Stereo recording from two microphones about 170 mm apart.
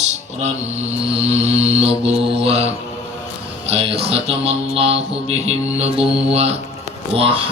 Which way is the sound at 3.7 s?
35° right (ahead or behind).